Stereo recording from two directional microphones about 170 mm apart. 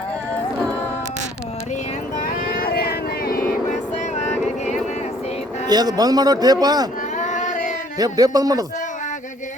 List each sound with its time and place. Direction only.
2.2 s vehicle: 60° left (ahead or behind)
5.6 s a man's voice: 25° right (ahead or behind)
7.2 s a sound: 45° left (ahead or behind)
7.9 s a man's voice: 20° right (ahead or behind)